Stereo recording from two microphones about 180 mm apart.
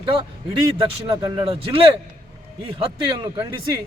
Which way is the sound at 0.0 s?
30° right (ahead or behind).